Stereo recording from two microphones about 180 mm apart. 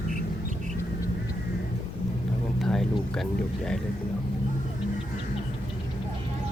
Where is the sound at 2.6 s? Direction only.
Centre (ahead or behind).